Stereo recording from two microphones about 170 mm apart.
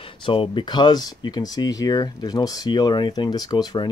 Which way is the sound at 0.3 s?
30° left (ahead or behind).